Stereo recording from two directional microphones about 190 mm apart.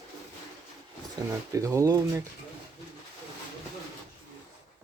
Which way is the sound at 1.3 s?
15° right (ahead or behind).